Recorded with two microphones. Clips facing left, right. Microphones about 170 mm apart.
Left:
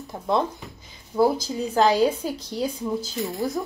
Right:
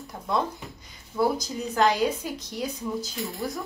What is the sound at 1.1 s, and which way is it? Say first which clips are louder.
A woman's voice: left 4 dB; 25° left (ahead or behind).